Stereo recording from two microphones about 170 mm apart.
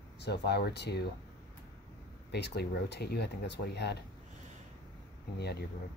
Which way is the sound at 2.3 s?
75° left (ahead or behind).